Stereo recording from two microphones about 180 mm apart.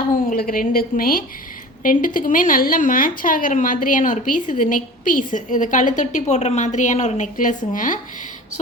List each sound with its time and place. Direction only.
0.3 s speech: 50° left (ahead or behind)